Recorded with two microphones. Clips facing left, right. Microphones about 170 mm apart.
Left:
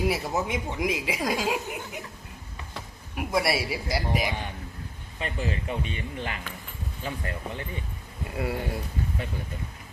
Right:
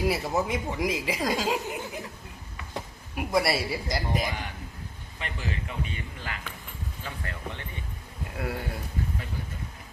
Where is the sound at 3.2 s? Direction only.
Centre (ahead or behind).